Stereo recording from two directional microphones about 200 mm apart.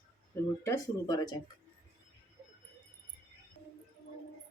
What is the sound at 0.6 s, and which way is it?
Speech, 15° left (ahead or behind).